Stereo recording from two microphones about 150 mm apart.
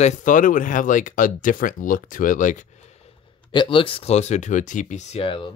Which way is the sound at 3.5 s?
35° left (ahead or behind).